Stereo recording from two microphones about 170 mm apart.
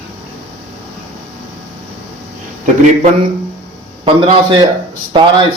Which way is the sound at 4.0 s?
30° right (ahead or behind).